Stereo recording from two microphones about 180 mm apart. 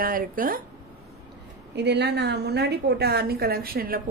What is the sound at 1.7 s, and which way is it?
A woman's voice, 70° right (ahead or behind).